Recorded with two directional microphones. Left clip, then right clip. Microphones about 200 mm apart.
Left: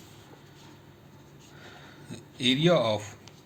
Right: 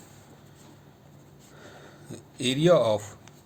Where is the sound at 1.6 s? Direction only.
55° right (ahead or behind).